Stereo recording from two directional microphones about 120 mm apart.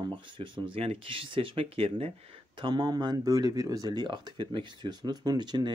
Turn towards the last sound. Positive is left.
turn(degrees=-35)  # may be behind; listen again after turning